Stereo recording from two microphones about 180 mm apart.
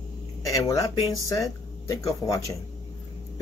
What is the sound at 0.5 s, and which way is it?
Speech, 15° left (ahead or behind).